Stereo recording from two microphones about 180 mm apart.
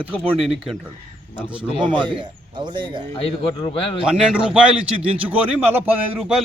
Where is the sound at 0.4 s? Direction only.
Centre (ahead or behind).